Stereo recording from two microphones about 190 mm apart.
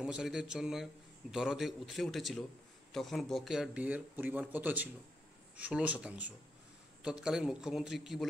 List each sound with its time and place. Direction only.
0.0 s a man's voice: 5° right (ahead or behind)